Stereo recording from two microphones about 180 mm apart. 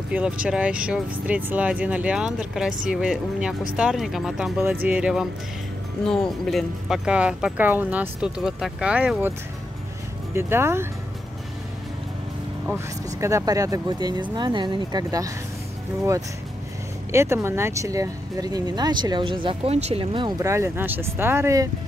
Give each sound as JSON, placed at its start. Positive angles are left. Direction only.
{"t": 0.1, "sound": "speech", "side_deg": -5}
{"t": 10.3, "sound": "speech", "side_deg": -15}
{"t": 12.6, "sound": "speech", "side_deg": -15}
{"t": 17.1, "sound": "speech", "side_deg": -15}